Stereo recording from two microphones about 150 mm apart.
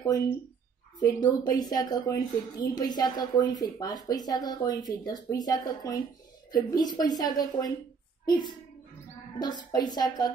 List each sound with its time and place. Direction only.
0.0 s a woman's voice: 20° left (ahead or behind)
9.4 s a woman's voice: 30° left (ahead or behind)